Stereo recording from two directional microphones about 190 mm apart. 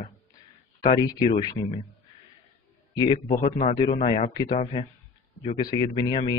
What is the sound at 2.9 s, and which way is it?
Speech, 25° left (ahead or behind).